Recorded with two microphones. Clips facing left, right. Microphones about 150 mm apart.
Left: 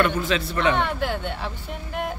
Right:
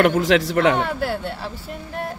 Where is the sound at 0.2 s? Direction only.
85° right.